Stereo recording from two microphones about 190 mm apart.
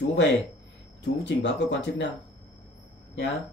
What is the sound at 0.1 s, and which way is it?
Speech, 70° left (ahead or behind).